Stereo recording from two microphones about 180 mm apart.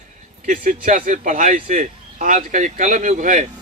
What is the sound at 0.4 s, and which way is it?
Speech, 50° right (ahead or behind).